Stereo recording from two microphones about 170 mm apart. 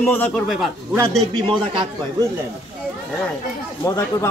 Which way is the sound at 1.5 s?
30° right (ahead or behind).